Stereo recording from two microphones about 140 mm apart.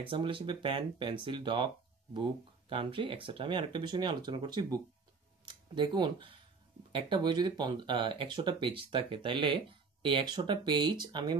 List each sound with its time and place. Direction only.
0.0 s speech: 40° right (ahead or behind)